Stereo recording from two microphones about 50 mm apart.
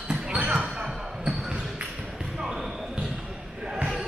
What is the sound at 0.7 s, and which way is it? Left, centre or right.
Basketball bounce, centre.